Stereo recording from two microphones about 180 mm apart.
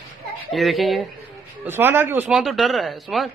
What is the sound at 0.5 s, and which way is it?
Speech, centre (ahead or behind).